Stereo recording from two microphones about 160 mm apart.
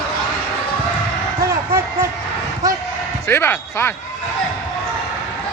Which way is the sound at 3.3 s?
15° left (ahead or behind).